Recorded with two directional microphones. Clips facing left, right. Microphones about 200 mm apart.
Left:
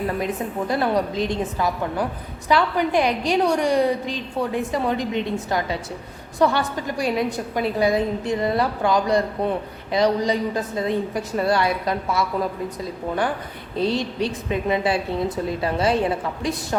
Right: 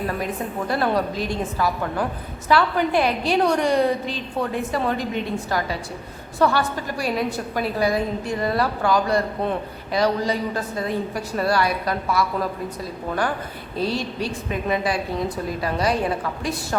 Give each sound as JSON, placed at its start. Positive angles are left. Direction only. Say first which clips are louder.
{"t": 0.7, "sound": "a woman's voice", "louder": "even", "side_deg": 15}